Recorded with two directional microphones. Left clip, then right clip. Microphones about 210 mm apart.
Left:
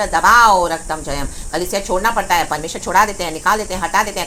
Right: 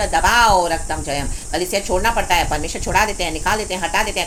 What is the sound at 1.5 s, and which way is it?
A woman's voice, 10° left (ahead or behind).